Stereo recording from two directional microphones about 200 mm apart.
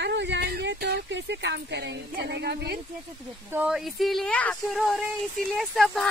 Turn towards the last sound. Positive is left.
turn(degrees=0)  # may be behind; listen again after turning